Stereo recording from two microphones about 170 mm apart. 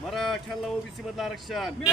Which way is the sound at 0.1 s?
Centre (ahead or behind).